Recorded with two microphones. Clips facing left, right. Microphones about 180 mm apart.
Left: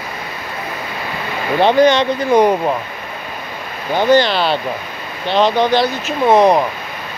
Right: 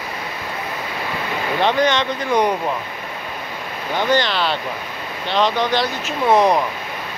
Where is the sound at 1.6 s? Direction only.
35° left (ahead or behind).